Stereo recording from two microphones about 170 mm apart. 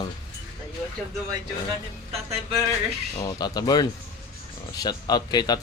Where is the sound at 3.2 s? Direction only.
25° left (ahead or behind).